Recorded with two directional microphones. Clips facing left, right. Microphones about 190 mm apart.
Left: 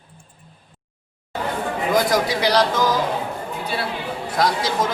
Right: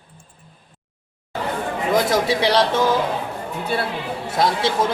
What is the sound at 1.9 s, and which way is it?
Speech, 25° right (ahead or behind).